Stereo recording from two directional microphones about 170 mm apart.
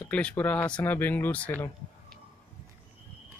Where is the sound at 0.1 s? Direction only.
10° left (ahead or behind).